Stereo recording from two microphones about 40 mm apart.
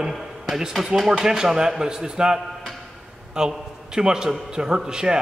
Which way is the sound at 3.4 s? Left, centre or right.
Centre.